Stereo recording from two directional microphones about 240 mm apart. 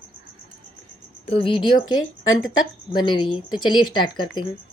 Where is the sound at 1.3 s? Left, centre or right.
Left.